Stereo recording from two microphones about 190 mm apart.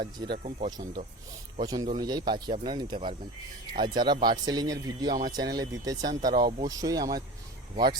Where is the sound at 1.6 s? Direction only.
20° right (ahead or behind).